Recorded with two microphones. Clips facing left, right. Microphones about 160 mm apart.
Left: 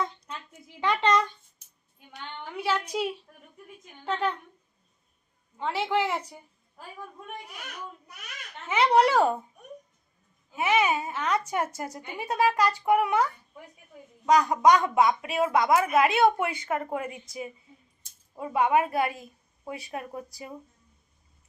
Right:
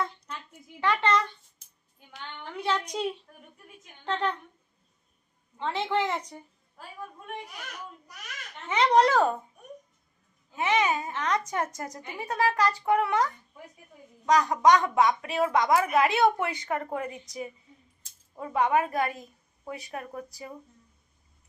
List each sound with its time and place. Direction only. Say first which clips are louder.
0.8 s a woman's voice: left 1 dB; 15° left (ahead or behind)
2.4 s a woman's voice: left 1 dB; 5° left (ahead or behind)
5.5 s a woman's voice: left 1 dB; 10° left (ahead or behind)
8.6 s a woman's voice: even; 10° left (ahead or behind)
10.5 s a woman's voice: left 1 dB; 10° left (ahead or behind)
14.3 s a woman's voice: left 1 dB; 10° left (ahead or behind)
18.3 s a woman's voice: left 1 dB; 15° left (ahead or behind)